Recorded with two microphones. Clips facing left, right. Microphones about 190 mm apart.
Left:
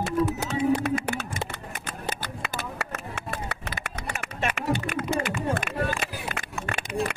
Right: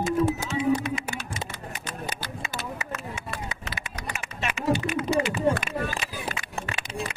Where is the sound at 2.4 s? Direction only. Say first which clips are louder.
Left 2 dB; 65° left (ahead or behind).